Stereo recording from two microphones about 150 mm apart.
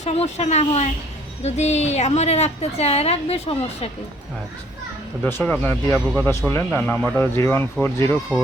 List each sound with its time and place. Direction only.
0.0 s a woman's voice: 45° left (ahead or behind)
5.2 s a man's voice: 10° left (ahead or behind)
8.3 s speech: centre (ahead or behind)